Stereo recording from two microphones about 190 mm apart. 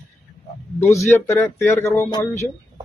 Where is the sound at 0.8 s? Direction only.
15° left (ahead or behind).